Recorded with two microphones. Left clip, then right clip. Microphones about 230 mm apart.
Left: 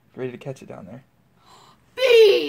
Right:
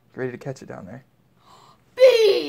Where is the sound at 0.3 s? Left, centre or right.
Right.